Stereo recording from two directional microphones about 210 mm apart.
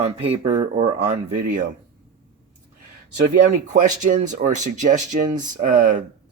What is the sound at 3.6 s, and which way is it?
Speech, 35° right (ahead or behind).